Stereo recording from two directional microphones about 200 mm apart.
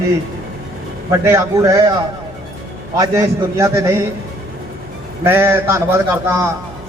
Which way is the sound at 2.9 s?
15° right (ahead or behind).